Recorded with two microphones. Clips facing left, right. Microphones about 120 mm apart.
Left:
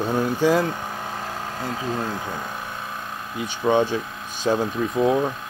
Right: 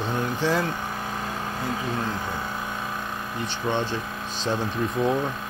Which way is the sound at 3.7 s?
10° left (ahead or behind).